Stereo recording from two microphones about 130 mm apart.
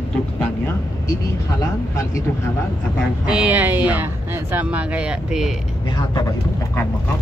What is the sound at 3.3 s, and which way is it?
Speech, 10° right (ahead or behind).